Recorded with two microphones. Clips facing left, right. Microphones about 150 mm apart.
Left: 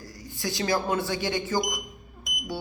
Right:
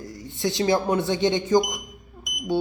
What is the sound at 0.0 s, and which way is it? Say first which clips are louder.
Speech: right 6 dB; 25° right (ahead or behind).